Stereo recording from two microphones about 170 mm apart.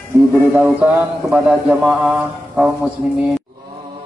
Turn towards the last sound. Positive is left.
turn(degrees=-5)  # may be behind; listen again after turning